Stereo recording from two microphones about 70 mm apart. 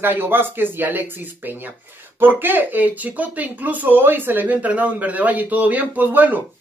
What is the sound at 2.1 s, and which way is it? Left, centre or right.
Speech, right.